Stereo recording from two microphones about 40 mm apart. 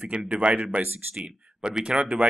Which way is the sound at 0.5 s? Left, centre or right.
Right.